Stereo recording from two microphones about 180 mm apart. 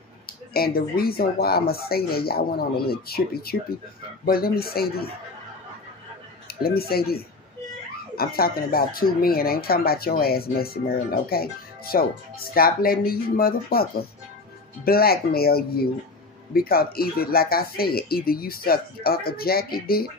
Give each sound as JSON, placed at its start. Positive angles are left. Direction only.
{"t": 0.3, "sound": "speech", "side_deg": 55}
{"t": 6.4, "sound": "speech", "side_deg": 60}